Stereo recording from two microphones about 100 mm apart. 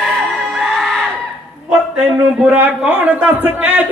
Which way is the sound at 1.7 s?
10° right (ahead or behind).